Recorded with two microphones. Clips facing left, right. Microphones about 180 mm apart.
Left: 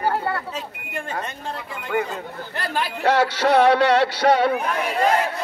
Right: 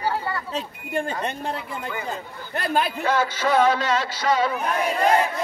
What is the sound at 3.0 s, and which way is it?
A man's voice, 70° left (ahead or behind).